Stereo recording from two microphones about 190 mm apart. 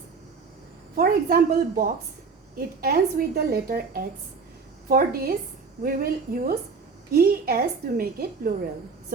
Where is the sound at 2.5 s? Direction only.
50° right (ahead or behind).